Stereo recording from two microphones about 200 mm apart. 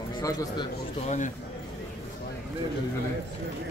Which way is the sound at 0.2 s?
20° left (ahead or behind).